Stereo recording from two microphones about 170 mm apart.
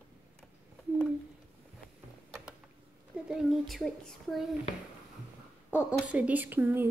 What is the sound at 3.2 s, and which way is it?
Speech, centre (ahead or behind).